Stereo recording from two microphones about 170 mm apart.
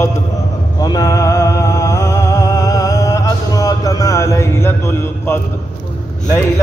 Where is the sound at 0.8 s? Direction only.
20° left (ahead or behind).